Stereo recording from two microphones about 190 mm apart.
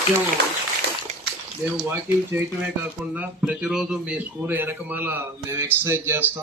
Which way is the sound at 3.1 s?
5° right (ahead or behind).